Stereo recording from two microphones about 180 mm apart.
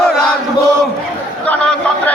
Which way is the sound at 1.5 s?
10° left (ahead or behind).